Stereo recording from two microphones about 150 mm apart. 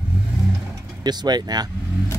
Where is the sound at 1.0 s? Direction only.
30° right (ahead or behind).